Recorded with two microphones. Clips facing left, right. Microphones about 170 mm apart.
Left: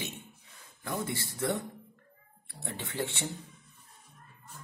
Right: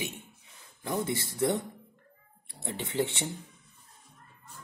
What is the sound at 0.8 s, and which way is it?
Speech, 20° right (ahead or behind).